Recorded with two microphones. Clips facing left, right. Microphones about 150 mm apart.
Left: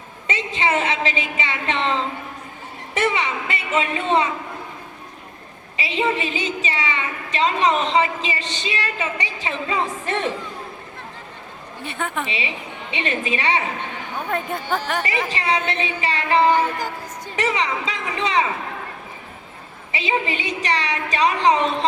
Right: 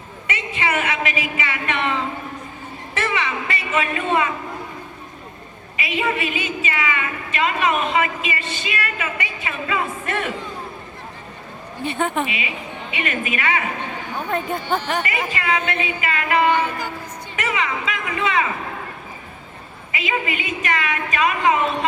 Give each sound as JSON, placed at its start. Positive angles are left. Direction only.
{"t": 0.3, "sound": "a woman's voice", "side_deg": 25}
{"t": 3.0, "sound": "a woman's voice", "side_deg": 20}
{"t": 5.7, "sound": "a woman's voice", "side_deg": 25}
{"t": 11.9, "sound": "a woman's voice", "side_deg": -20}
{"t": 12.9, "sound": "a woman's voice", "side_deg": 25}
{"t": 14.3, "sound": "speech", "side_deg": 0}
{"t": 15.3, "sound": "a woman's voice", "side_deg": 30}
{"t": 16.6, "sound": "music", "side_deg": 40}
{"t": 17.3, "sound": "a woman's voice", "side_deg": 30}
{"t": 19.9, "sound": "a woman's voice", "side_deg": 30}